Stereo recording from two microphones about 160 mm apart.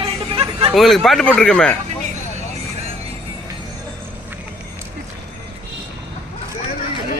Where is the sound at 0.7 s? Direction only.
Centre (ahead or behind).